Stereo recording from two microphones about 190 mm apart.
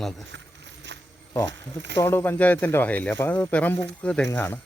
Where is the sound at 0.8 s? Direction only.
70° right (ahead or behind).